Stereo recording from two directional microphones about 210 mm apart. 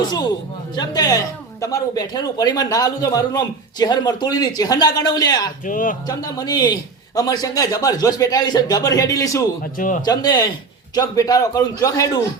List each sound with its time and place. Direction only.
0.1 s a man's voice: 20° left (ahead or behind)
5.6 s speech: 40° left (ahead or behind)
6.1 s a man's voice: 15° left (ahead or behind)
9.7 s speech: 40° left (ahead or behind)
10.1 s a man's voice: 20° left (ahead or behind)